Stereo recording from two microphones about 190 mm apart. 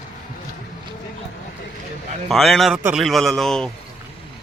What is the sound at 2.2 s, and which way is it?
A man's voice, centre (ahead or behind).